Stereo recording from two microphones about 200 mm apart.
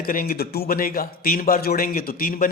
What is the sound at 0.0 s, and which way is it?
Speech, 45° left (ahead or behind).